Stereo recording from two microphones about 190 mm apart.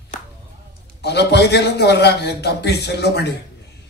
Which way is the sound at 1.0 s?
60° left (ahead or behind).